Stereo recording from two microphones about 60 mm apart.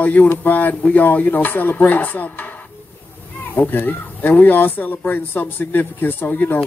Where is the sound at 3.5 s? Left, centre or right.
Left.